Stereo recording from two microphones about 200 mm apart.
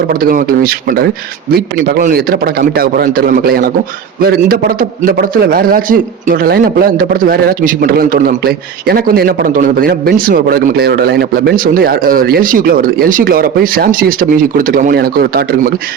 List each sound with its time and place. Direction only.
0.1 s a man's voice: 45° right (ahead or behind)